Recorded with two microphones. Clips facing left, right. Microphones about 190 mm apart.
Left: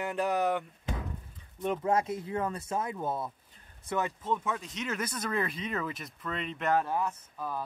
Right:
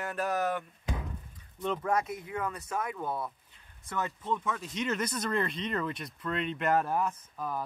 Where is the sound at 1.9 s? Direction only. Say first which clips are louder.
Left 4 dB; 25° left (ahead or behind).